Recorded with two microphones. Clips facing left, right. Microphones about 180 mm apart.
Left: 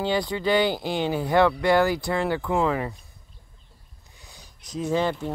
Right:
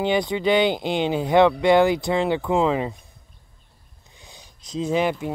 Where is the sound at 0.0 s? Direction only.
20° right (ahead or behind).